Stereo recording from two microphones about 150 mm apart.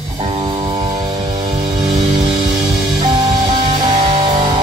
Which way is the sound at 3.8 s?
40° right (ahead or behind).